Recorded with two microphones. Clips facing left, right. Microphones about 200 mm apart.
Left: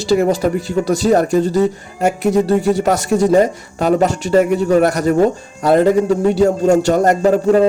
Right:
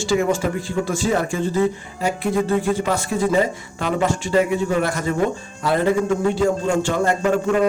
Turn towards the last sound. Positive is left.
turn(degrees=35)  # may be behind; listen again after turning